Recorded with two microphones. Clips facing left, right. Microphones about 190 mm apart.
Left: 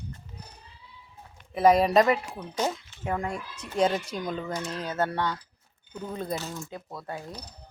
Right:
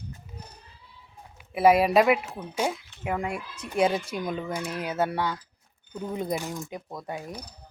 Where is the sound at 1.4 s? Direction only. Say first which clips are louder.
Right 1 dB; 5° right (ahead or behind).